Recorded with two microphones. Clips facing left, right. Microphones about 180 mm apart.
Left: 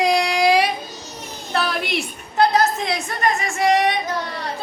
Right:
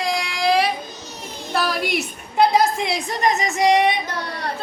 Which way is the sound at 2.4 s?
10° right (ahead or behind).